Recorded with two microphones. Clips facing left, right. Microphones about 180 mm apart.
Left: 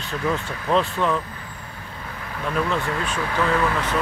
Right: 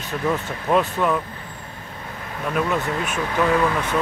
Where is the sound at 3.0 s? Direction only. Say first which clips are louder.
Right 2 dB; 10° right (ahead or behind).